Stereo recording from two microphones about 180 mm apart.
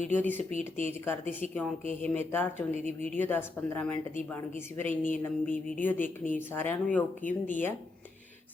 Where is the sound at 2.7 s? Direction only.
40° right (ahead or behind).